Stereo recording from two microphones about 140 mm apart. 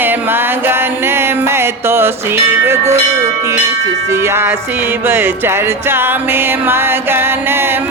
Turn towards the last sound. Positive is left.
turn(degrees=-15)  # may be behind; listen again after turning